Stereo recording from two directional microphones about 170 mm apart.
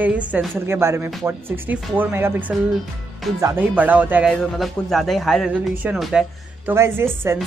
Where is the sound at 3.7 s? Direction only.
10° right (ahead or behind).